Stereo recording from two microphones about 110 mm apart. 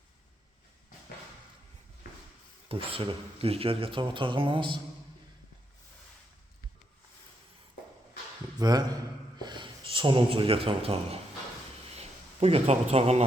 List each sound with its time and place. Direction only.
2.6 s speech: 55° right (ahead or behind)
8.5 s a man's voice: 35° right (ahead or behind); by 13.2 s 70° right (ahead or behind)